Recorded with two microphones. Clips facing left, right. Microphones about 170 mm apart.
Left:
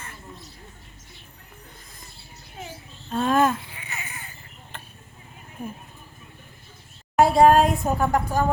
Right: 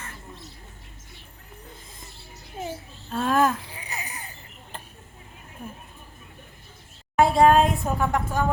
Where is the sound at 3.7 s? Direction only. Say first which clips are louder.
Right 2 dB; 35° right (ahead or behind).